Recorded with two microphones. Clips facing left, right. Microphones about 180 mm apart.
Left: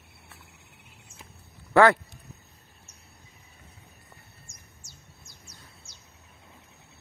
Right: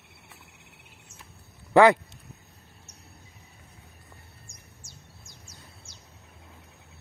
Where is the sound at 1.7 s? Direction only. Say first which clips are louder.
Right 2 dB; 15° right (ahead or behind).